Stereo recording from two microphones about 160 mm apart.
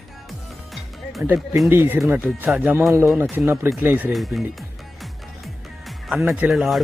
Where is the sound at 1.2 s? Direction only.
10° right (ahead or behind).